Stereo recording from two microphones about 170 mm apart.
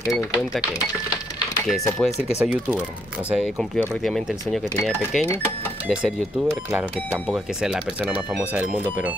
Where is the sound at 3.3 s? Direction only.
Centre (ahead or behind).